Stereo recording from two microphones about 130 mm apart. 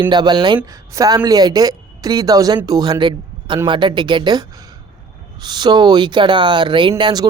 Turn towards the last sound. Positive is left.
turn(degrees=-35)  # may be behind; listen again after turning